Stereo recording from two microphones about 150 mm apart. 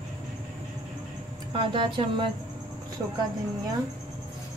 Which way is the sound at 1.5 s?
35° right (ahead or behind).